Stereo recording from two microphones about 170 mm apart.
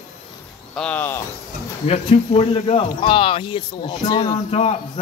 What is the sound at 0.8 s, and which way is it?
Speech, 10° left (ahead or behind).